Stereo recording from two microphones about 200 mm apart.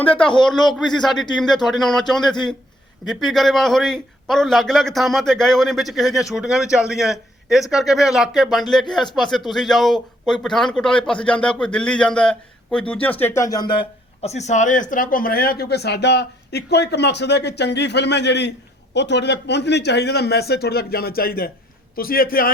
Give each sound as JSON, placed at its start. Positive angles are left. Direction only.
{"t": 0.2, "sound": "a man's voice", "side_deg": 5}